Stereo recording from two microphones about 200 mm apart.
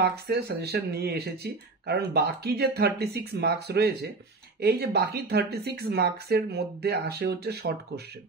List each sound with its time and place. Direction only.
0.0 s speech: 50° right (ahead or behind)